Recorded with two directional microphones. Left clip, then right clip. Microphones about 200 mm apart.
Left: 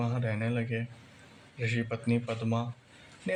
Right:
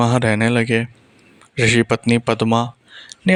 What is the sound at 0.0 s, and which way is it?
Speech, 55° right (ahead or behind).